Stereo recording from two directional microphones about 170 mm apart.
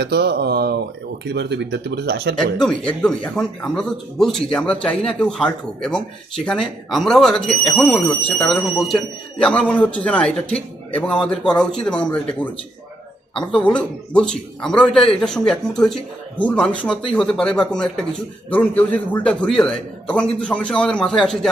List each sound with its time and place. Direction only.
0.0 s speech: 75° right (ahead or behind)
2.6 s a man's voice: 5° left (ahead or behind)